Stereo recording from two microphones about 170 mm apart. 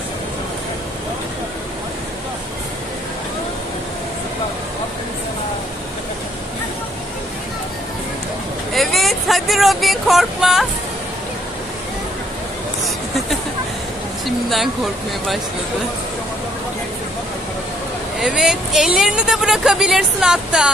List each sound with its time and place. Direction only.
8.7 s a sound: centre (ahead or behind)
14.2 s speech: centre (ahead or behind)
18.2 s speech: 5° right (ahead or behind)